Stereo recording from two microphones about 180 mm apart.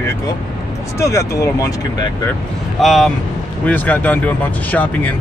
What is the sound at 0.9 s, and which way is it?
Speech, 15° left (ahead or behind).